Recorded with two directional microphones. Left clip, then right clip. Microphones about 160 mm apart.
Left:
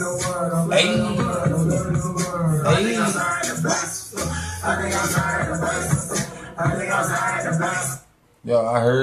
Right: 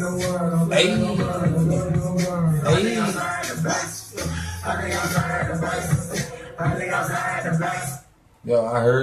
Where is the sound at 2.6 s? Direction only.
Centre (ahead or behind).